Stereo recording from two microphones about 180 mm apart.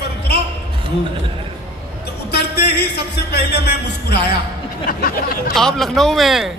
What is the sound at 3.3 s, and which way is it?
Music, 65° left (ahead or behind).